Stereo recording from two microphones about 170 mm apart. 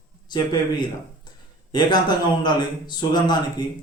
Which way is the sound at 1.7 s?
25° left (ahead or behind).